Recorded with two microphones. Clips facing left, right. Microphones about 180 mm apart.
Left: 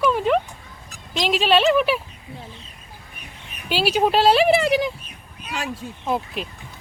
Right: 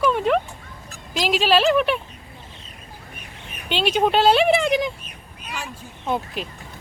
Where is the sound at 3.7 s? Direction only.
5° left (ahead or behind).